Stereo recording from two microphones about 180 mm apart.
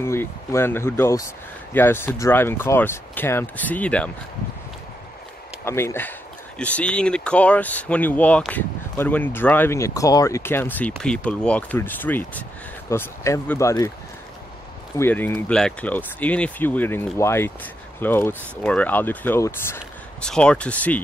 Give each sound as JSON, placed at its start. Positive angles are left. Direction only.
{"t": 0.0, "sound": "speech", "side_deg": 15}
{"t": 5.7, "sound": "speech", "side_deg": 15}
{"t": 15.0, "sound": "speech", "side_deg": 10}